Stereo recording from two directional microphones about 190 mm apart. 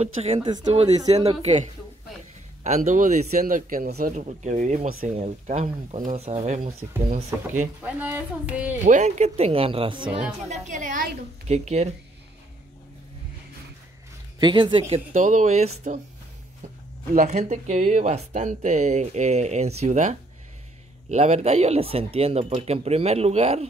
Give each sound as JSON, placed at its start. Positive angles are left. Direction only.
{"t": 0.0, "sound": "speech", "side_deg": -35}
{"t": 4.1, "sound": "speech", "side_deg": -35}
{"t": 7.3, "sound": "speech", "side_deg": -15}
{"t": 8.8, "sound": "speech", "side_deg": -40}
{"t": 10.5, "sound": "speech", "side_deg": -40}
{"t": 14.4, "sound": "speech", "side_deg": -25}
{"t": 17.1, "sound": "speech", "side_deg": -35}